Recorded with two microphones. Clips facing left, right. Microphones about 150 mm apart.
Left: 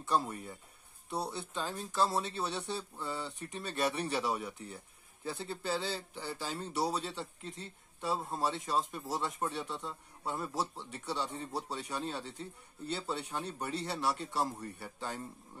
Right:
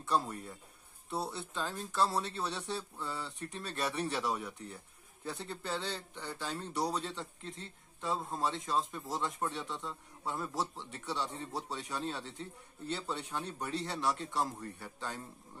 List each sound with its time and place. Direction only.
0.0 s speech: centre (ahead or behind)